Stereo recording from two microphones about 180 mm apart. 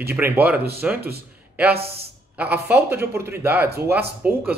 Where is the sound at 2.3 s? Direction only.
10° right (ahead or behind).